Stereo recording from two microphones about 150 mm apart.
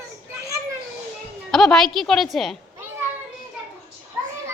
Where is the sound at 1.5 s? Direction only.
5° left (ahead or behind).